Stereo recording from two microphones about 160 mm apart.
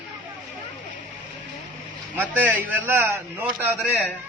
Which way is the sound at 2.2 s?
10° right (ahead or behind).